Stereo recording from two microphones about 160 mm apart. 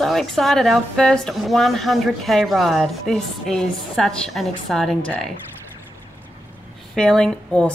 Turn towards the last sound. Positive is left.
turn(degrees=5)  # may be behind; listen again after turning